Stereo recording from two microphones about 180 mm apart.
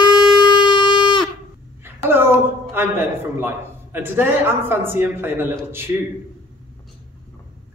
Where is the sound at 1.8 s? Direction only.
10° right (ahead or behind).